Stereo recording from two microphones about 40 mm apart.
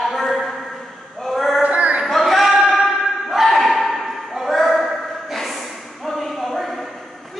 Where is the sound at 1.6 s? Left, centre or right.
Right.